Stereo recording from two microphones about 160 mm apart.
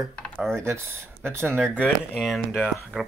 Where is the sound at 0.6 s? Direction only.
15° right (ahead or behind).